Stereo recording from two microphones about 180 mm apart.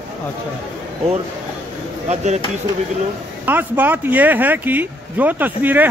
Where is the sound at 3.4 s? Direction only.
10° right (ahead or behind).